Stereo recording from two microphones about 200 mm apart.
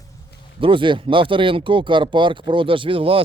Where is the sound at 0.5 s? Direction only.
25° right (ahead or behind).